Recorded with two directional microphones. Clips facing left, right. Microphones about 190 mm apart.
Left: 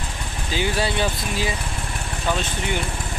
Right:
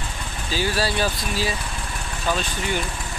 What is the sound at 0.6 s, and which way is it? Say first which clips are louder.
Speech: even; 20° left (ahead or behind).